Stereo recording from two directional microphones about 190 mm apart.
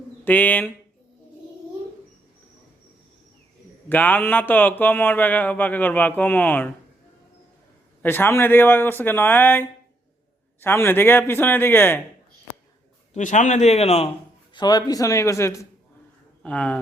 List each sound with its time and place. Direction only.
0.3 s speech: 10° left (ahead or behind)
3.8 s speech: 10° left (ahead or behind)
8.0 s speech: 10° left (ahead or behind)
13.1 s speech: 40° left (ahead or behind)
14.5 s speech: 20° left (ahead or behind); by 16.8 s 5° left (ahead or behind)